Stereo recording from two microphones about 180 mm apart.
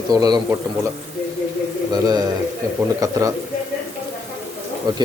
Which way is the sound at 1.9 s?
20° right (ahead or behind).